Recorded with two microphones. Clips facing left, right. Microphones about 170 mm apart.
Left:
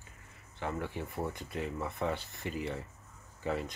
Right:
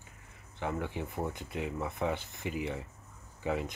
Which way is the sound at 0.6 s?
15° right (ahead or behind).